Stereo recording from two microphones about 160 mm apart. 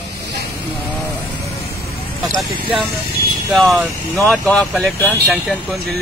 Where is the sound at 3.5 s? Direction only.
5° right (ahead or behind).